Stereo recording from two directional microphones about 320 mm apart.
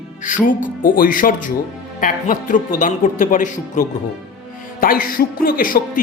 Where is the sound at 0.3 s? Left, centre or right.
Left.